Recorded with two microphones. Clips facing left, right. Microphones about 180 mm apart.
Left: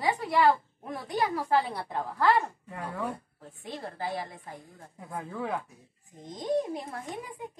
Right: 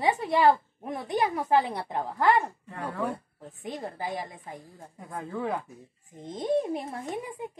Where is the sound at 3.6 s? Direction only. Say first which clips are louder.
Right 2 dB; 20° right (ahead or behind).